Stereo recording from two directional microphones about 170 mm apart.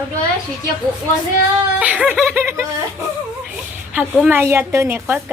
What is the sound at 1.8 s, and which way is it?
Speech, 10° right (ahead or behind).